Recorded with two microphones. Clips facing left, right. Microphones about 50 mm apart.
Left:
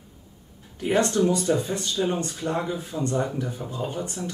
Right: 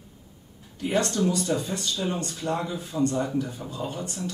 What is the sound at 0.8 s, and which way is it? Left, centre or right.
Speech, centre.